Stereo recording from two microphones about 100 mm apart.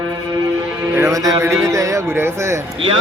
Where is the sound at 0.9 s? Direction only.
30° right (ahead or behind).